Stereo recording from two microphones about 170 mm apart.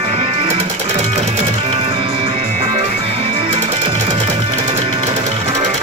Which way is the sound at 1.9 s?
35° right (ahead or behind).